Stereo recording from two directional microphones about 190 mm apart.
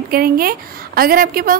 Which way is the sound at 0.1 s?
50° right (ahead or behind).